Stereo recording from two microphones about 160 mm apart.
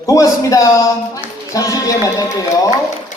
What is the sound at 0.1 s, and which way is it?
Speech, 20° left (ahead or behind).